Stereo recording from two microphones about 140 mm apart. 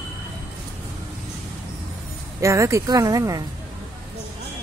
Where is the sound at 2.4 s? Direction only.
20° right (ahead or behind).